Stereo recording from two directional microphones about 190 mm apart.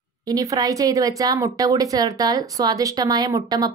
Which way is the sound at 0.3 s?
20° right (ahead or behind).